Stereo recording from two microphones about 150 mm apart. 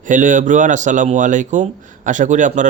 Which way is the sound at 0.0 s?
60° right (ahead or behind).